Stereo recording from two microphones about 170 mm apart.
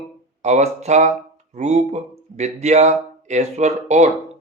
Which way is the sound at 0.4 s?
40° right (ahead or behind).